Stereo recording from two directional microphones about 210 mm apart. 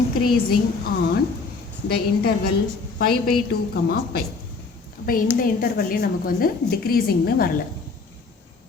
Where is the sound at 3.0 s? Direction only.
50° left (ahead or behind).